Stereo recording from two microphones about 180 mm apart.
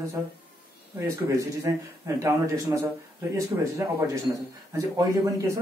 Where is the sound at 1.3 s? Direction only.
15° right (ahead or behind).